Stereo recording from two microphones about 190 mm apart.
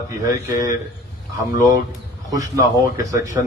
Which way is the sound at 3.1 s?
15° right (ahead or behind).